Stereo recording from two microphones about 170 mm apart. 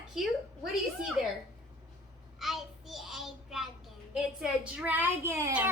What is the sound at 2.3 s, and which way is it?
A child's voice, centre (ahead or behind).